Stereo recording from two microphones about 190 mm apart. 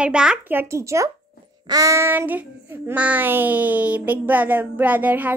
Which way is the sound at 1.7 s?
15° right (ahead or behind).